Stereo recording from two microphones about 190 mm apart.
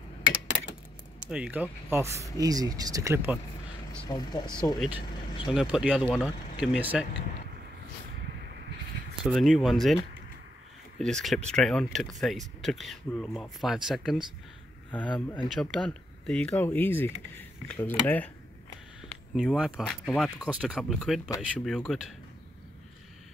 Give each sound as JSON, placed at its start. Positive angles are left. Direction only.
{"t": 1.3, "sound": "speech", "side_deg": -5}
{"t": 4.1, "sound": "speech", "side_deg": 20}
{"t": 4.7, "sound": "speech", "side_deg": -5}
{"t": 9.2, "sound": "speech", "side_deg": 0}
{"t": 11.0, "sound": "speech", "side_deg": 0}
{"t": 19.0, "sound": "speech", "side_deg": 0}